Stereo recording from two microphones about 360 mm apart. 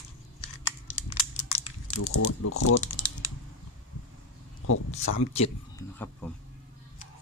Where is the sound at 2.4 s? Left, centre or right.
Left.